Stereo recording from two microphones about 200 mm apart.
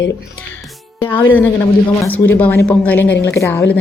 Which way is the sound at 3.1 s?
60° left (ahead or behind).